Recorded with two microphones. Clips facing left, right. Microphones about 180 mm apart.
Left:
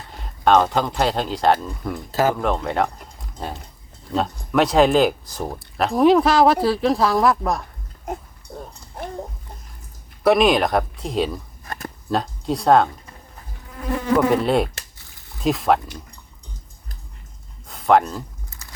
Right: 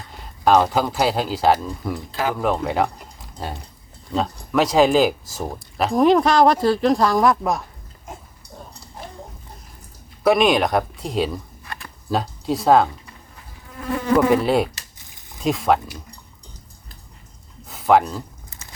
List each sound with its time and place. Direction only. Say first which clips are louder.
0.2 s speech: even; centre (ahead or behind)
10.2 s speech: left 1 dB; centre (ahead or behind)
11.6 s a sound: left 5 dB; 45° left (ahead or behind)
12.1 s speech: even; centre (ahead or behind)
14.3 s speech: right 1 dB; centre (ahead or behind)
17.7 s a sound: even; centre (ahead or behind)